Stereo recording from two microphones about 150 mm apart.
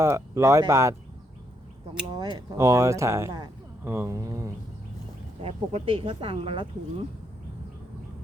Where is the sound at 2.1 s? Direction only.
25° right (ahead or behind).